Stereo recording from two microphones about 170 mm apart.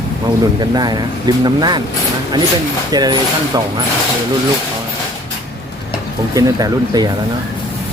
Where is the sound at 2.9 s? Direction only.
25° right (ahead or behind).